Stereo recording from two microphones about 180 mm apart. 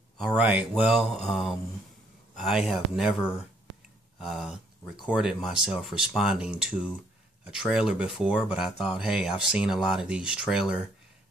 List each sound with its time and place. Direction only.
0.4 s speech: 5° right (ahead or behind)